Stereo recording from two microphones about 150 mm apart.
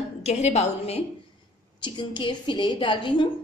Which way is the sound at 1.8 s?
30° left (ahead or behind).